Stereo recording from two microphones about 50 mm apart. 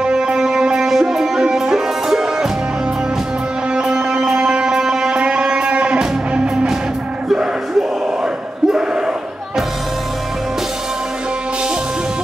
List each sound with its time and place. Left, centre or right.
0.0 s music: centre
3.7 s music: centre